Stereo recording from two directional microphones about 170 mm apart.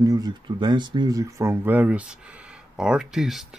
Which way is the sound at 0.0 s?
20° right (ahead or behind).